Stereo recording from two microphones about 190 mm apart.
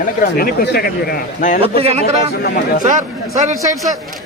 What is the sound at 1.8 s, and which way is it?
Speech, 30° right (ahead or behind).